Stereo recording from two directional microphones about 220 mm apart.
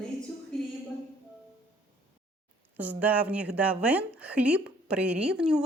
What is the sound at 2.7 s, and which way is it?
A woman's voice, 5° right (ahead or behind).